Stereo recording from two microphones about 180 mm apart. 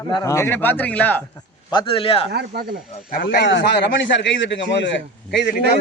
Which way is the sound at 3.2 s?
80° left.